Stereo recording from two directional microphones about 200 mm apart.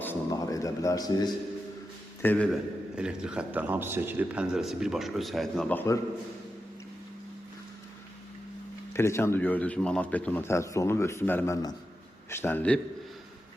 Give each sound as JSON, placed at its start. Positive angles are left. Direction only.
{"t": 0.0, "sound": "a sound", "side_deg": 15}
{"t": 2.2, "sound": "a man's voice", "side_deg": 10}
{"t": 2.5, "sound": "a man's voice", "side_deg": -5}
{"t": 8.9, "sound": "a man's voice", "side_deg": 15}